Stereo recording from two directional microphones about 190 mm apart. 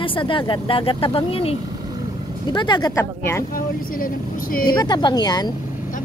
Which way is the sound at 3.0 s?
10° left (ahead or behind).